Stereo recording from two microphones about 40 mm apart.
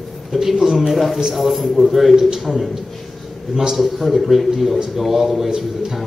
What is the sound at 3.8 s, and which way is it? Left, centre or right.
Speech, centre.